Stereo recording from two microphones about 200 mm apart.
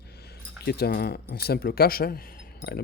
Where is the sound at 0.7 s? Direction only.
50° left (ahead or behind).